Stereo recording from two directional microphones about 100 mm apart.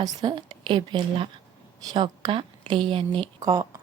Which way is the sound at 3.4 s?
35° right (ahead or behind).